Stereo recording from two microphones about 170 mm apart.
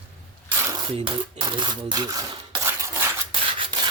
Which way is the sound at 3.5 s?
30° right (ahead or behind).